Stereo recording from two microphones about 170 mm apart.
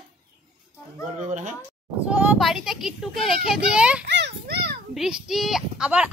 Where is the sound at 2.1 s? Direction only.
10° right (ahead or behind).